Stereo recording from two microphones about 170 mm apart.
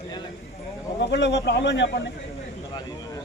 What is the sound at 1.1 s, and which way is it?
Speech, 90° left.